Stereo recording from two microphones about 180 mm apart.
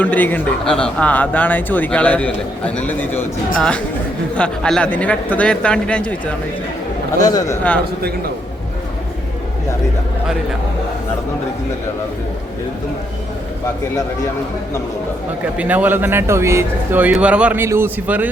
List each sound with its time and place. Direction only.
0.0 s speech: 10° left (ahead or behind)
4.4 s speech: 5° left (ahead or behind)
7.2 s speech: 20° left (ahead or behind)
15.5 s speech: 10° right (ahead or behind)